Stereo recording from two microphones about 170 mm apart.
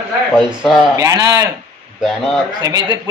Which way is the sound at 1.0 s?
20° right (ahead or behind).